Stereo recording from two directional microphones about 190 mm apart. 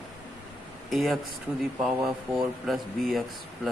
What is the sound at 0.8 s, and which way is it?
Speech, centre (ahead or behind).